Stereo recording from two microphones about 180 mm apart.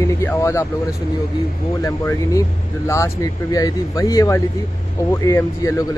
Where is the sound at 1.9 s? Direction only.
15° left (ahead or behind).